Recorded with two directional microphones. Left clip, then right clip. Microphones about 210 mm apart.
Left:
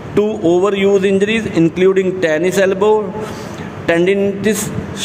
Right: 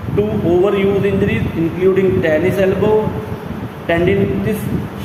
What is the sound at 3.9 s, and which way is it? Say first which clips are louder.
Speech: left 2 dB; 50° left (ahead or behind).